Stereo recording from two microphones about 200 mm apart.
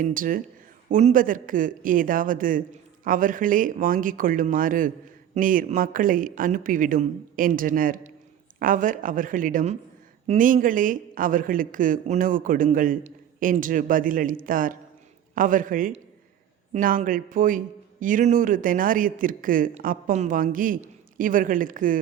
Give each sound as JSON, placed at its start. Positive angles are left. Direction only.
{"t": 0.0, "sound": "a man's voice", "side_deg": -40}